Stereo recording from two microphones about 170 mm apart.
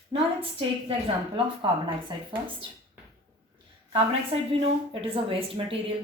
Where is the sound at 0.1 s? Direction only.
35° right (ahead or behind).